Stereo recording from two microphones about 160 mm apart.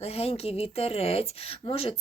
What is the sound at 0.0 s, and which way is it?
A woman's voice, 40° left (ahead or behind).